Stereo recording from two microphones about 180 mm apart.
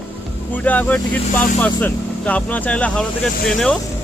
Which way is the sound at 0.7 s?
10° left (ahead or behind).